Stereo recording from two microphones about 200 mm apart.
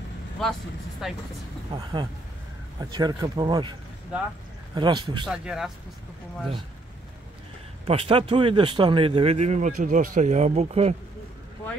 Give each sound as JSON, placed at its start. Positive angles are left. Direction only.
{"t": 0.4, "sound": "speech", "side_deg": 0}
{"t": 1.7, "sound": "a man's voice", "side_deg": -20}
{"t": 4.7, "sound": "a man's voice", "side_deg": -25}
{"t": 5.2, "sound": "speech", "side_deg": -5}
{"t": 7.8, "sound": "a man's voice", "side_deg": -30}